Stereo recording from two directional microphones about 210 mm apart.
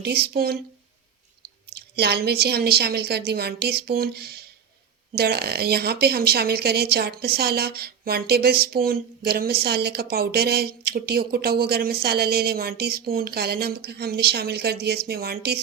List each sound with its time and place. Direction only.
0.0 s a woman's voice: 50° right (ahead or behind)